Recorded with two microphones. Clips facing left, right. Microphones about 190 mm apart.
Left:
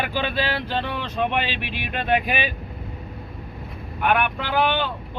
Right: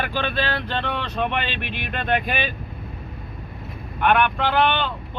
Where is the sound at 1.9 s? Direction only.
10° left (ahead or behind).